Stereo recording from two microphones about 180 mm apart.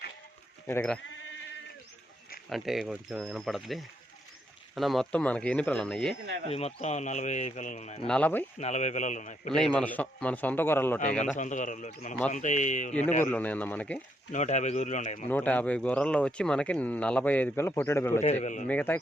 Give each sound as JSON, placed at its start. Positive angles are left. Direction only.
{"t": 0.7, "sound": "speech", "side_deg": 10}
{"t": 2.5, "sound": "speech", "side_deg": 0}
{"t": 6.5, "sound": "speech", "side_deg": 35}
{"t": 8.0, "sound": "speech", "side_deg": 5}
{"t": 8.5, "sound": "speech", "side_deg": 40}
{"t": 9.6, "sound": "speech", "side_deg": 5}
{"t": 11.3, "sound": "a man's voice", "side_deg": 45}
{"t": 13.2, "sound": "speech", "side_deg": 10}
{"t": 14.3, "sound": "speech", "side_deg": 40}
{"t": 15.3, "sound": "speech", "side_deg": 10}
{"t": 18.2, "sound": "speech", "side_deg": 35}
{"t": 18.7, "sound": "speech", "side_deg": 10}